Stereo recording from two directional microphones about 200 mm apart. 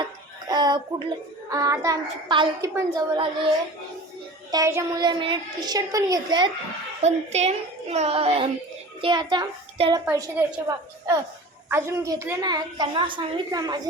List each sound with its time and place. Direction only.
0.0 s a sound: 20° right (ahead or behind)
1.5 s a woman's voice: 15° right (ahead or behind)
4.5 s a woman's voice: 15° right (ahead or behind)
7.0 s a woman's voice: 35° right (ahead or behind)